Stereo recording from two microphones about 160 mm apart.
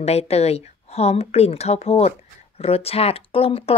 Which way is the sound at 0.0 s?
40° left (ahead or behind).